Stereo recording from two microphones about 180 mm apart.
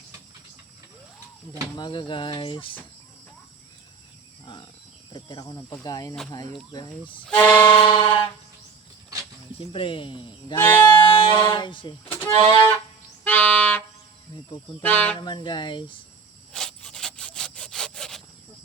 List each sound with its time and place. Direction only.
1.7 s speech: 25° left (ahead or behind)
5.1 s speech: 25° left (ahead or behind)
7.3 s speech: 10° left (ahead or behind)
7.7 s speech: 25° left (ahead or behind)
9.6 s speech: 30° left (ahead or behind)
10.6 s speech: 10° left (ahead or behind)
11.0 s a sound: 30° left (ahead or behind)
11.5 s speech: 25° left (ahead or behind)
12.1 s speech: 15° left (ahead or behind)
13.2 s music: 10° left (ahead or behind)
14.8 s speech: 10° left (ahead or behind)
15.2 s speech: 25° left (ahead or behind)
16.5 s sawing: 5° left (ahead or behind)